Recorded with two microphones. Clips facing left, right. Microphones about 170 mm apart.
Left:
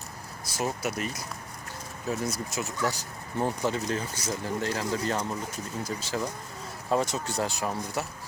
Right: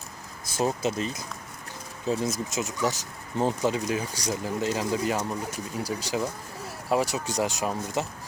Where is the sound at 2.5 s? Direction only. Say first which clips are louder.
Right 1 dB; 15° right (ahead or behind).